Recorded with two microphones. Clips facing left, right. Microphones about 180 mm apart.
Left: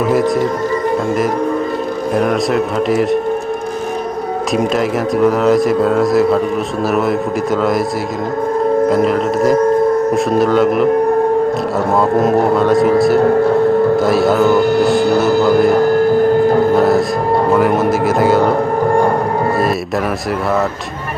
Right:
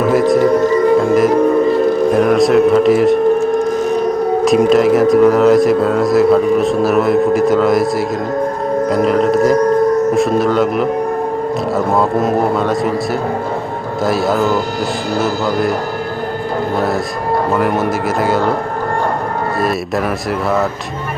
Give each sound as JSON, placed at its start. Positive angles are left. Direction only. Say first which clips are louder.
{"t": 0.1, "sound": "speech", "louder": "right 3 dB", "side_deg": 0}
{"t": 2.1, "sound": "speech", "louder": "right 2 dB", "side_deg": 0}
{"t": 4.5, "sound": "speech", "louder": "right 5 dB", "side_deg": 0}
{"t": 9.0, "sound": "speech", "louder": "right 1 dB", "side_deg": 0}
{"t": 12.2, "sound": "speech", "louder": "left 2 dB", "side_deg": 0}
{"t": 14.1, "sound": "speech", "louder": "left 3 dB", "side_deg": 0}